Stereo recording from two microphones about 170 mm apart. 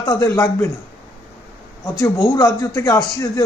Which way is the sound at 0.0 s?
20° left (ahead or behind).